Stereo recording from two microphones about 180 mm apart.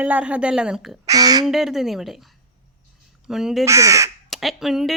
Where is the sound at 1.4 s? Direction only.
Centre (ahead or behind).